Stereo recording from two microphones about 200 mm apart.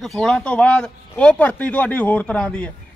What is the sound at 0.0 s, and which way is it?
Speech, centre (ahead or behind).